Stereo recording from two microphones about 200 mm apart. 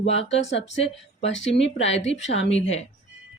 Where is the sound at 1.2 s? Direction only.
65° left (ahead or behind).